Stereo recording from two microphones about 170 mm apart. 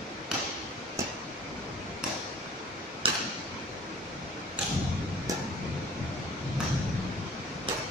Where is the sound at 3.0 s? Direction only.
30° right (ahead or behind).